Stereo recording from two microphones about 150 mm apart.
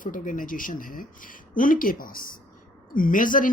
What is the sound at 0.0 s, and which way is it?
A woman's voice, 60° left (ahead or behind).